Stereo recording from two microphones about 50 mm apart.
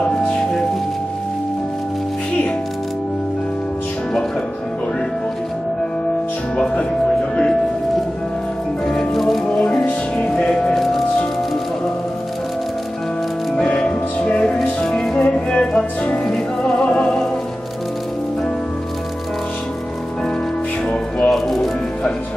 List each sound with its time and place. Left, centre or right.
0.3 s music: centre
8.8 s music: centre
9.5 s music: centre
13.7 s music: centre
17.0 s music: centre
21.3 s music: centre